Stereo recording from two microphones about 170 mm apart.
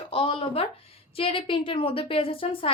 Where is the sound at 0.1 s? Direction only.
35° left (ahead or behind).